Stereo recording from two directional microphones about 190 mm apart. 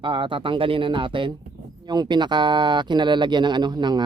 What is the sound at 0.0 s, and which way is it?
Speech, 25° right (ahead or behind).